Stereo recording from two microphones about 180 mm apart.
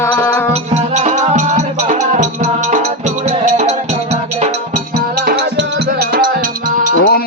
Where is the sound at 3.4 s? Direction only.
40° right (ahead or behind).